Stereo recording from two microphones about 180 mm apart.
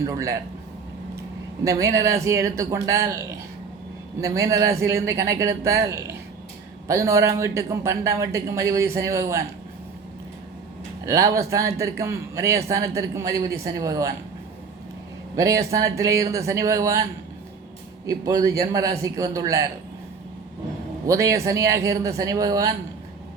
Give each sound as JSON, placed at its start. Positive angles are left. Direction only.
{"t": 0.0, "sound": "a man's voice", "side_deg": -20}
{"t": 1.6, "sound": "a man's voice", "side_deg": -20}
{"t": 11.0, "sound": "a man's voice", "side_deg": -20}
{"t": 15.4, "sound": "a man's voice", "side_deg": -20}
{"t": 21.1, "sound": "a man's voice", "side_deg": -15}